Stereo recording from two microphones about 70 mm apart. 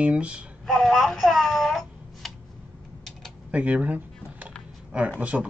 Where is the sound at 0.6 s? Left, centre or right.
Centre.